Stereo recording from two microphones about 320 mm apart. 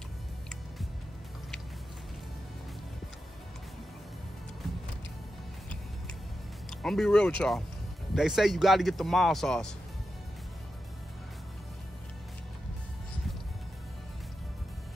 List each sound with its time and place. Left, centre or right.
6.7 s speech: centre